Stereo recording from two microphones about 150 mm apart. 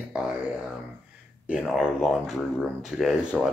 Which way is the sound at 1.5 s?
5° right (ahead or behind).